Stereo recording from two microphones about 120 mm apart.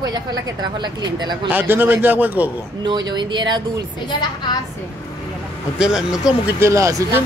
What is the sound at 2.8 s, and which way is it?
Speech, 40° right (ahead or behind).